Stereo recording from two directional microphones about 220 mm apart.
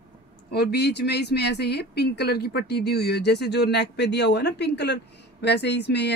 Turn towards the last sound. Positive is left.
turn(degrees=50)  # may be behind; listen again after turning